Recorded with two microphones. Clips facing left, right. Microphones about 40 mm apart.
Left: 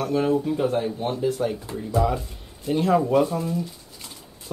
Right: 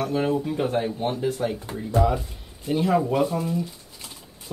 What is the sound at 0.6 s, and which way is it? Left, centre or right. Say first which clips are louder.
Speech: left 1 dB; centre.